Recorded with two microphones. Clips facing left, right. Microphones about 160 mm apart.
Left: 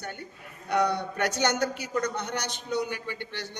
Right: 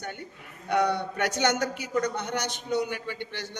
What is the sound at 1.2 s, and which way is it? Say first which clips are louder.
A man's voice: even; 15° right (ahead or behind).